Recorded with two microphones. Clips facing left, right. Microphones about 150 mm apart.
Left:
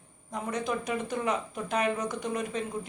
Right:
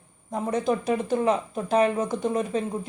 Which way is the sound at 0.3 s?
30° right (ahead or behind).